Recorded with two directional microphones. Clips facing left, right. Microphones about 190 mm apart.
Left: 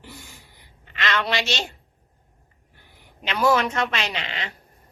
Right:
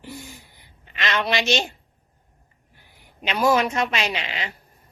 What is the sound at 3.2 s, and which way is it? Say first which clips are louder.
A woman's voice: right 1 dB; 15° right (ahead or behind).